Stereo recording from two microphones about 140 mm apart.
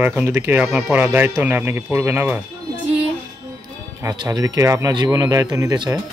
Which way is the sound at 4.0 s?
25° right (ahead or behind).